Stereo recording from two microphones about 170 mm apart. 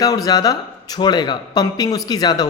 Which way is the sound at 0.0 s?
20° left (ahead or behind).